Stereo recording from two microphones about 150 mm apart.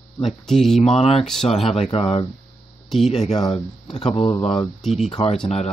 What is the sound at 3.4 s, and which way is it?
Speech, 30° left (ahead or behind).